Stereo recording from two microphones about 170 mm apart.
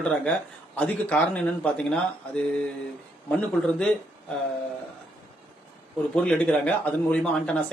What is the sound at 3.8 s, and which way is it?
Speech, 5° left (ahead or behind).